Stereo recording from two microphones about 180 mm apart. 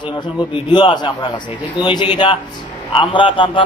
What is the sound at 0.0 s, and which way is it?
Speech, 25° left (ahead or behind).